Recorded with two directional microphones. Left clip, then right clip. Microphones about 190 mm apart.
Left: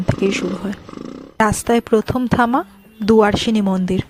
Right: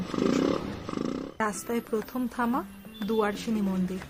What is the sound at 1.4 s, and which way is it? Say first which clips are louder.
Speech: left 15 dB; 50° left (ahead or behind).